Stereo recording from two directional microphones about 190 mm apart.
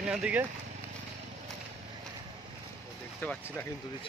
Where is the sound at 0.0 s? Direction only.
5° right (ahead or behind).